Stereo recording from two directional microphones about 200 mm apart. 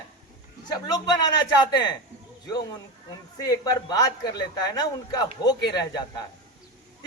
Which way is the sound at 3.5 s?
20° left (ahead or behind).